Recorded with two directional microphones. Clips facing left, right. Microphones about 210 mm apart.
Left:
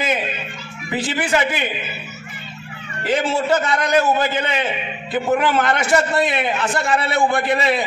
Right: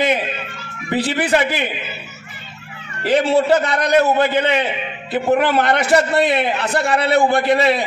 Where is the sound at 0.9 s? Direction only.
35° right (ahead or behind).